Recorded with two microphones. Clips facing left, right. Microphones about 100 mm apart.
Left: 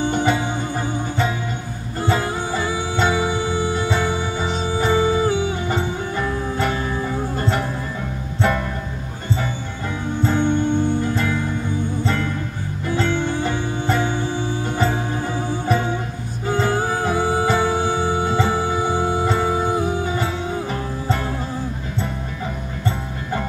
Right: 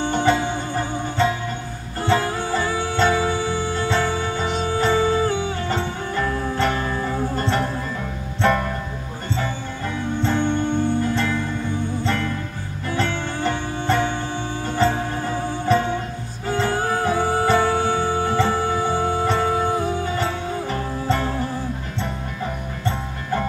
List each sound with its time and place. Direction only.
0.0 s music: 15° left (ahead or behind)
10.2 s music: 20° left (ahead or behind)
12.8 s music: 20° left (ahead or behind)